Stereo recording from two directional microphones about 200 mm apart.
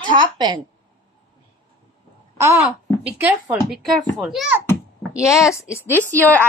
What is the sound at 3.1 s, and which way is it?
A woman's voice, 5° right (ahead or behind).